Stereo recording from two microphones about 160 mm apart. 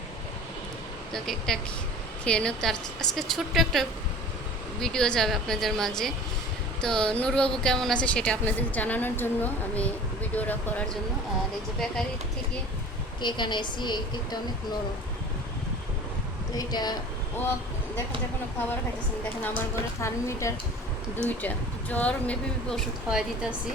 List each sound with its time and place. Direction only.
1.1 s a woman's voice: 5° left (ahead or behind)
13.2 s a woman's voice: 30° left (ahead or behind)
16.6 s a woman's voice: 25° left (ahead or behind)
20.0 s a woman's voice: 20° left (ahead or behind); by 23.6 s 5° right (ahead or behind)